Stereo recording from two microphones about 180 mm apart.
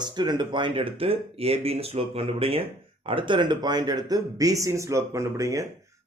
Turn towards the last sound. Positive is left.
turn(degrees=-15)  # may be behind; listen again after turning